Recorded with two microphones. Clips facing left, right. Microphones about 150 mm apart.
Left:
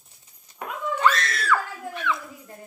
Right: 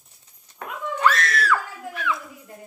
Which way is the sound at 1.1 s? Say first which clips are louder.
Right 3 dB; 25° left (ahead or behind).